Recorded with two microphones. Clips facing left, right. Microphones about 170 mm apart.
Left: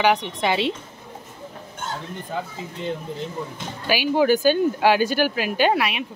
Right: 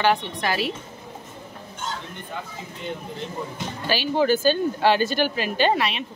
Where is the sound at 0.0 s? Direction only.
15° left (ahead or behind).